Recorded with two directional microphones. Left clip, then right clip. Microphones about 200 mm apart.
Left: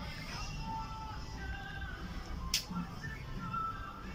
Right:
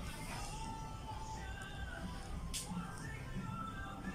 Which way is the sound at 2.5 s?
50° left (ahead or behind).